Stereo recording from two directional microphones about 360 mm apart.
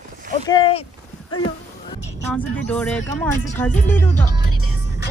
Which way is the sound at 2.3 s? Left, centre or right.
Centre.